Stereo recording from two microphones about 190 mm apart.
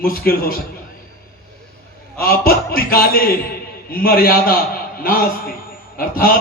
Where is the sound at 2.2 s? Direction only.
50° left (ahead or behind).